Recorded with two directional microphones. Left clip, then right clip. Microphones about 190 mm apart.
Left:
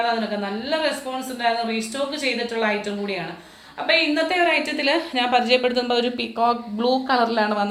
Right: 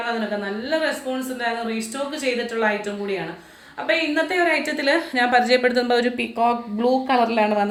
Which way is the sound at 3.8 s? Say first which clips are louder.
Left 2 dB; 25° right (ahead or behind).